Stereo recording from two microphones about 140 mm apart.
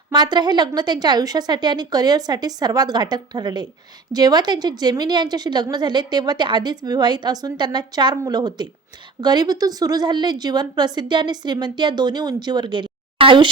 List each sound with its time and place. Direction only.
0.1 s a woman's voice: 30° right (ahead or behind)